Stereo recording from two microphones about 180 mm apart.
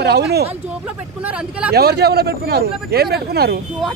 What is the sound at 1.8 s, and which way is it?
Speech, 60° right (ahead or behind).